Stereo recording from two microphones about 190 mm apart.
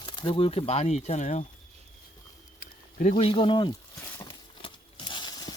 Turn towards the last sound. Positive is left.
turn(degrees=25)  # may be behind; listen again after turning